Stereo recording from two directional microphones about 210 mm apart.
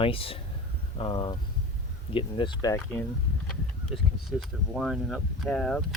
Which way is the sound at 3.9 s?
Centre (ahead or behind).